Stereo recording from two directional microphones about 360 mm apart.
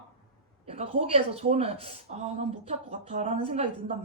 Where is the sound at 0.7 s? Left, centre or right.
Centre.